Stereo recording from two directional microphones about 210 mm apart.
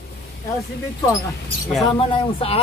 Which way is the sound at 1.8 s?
25° left (ahead or behind).